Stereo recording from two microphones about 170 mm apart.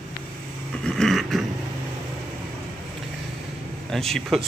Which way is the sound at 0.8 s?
5° left (ahead or behind).